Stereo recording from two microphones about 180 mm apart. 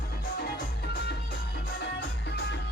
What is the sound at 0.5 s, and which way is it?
Music, 65° left (ahead or behind).